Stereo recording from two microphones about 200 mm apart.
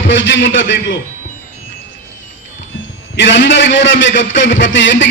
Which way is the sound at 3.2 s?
65° left (ahead or behind).